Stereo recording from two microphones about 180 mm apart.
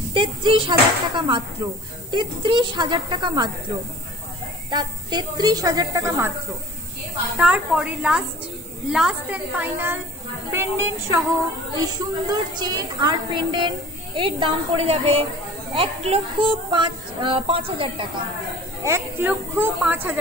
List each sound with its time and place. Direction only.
0.1 s a woman's voice: 25° right (ahead or behind)
4.6 s a woman's voice: 25° right (ahead or behind)
7.3 s a woman's voice: 5° right (ahead or behind); by 18.0 s 30° right (ahead or behind)
18.9 s a woman's voice: 15° right (ahead or behind)